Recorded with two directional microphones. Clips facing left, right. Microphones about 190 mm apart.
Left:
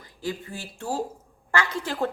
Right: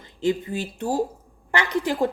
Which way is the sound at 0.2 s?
20° right (ahead or behind).